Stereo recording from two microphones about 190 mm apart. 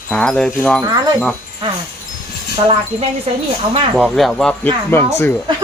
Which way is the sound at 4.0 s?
5° right (ahead or behind).